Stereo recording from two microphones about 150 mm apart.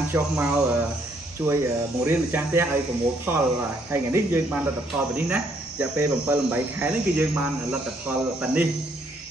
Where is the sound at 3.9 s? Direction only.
15° right (ahead or behind).